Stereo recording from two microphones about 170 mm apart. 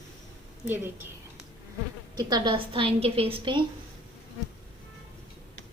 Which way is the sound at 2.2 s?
25° right (ahead or behind).